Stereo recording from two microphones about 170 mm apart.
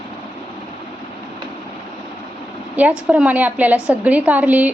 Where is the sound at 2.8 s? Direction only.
10° right (ahead or behind).